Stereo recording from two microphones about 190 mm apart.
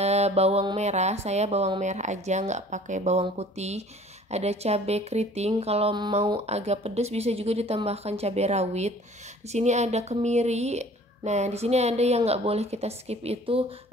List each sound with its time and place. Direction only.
0.0 s speech: 35° right (ahead or behind)